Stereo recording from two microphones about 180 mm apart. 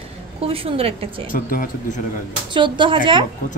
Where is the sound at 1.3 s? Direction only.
50° left (ahead or behind).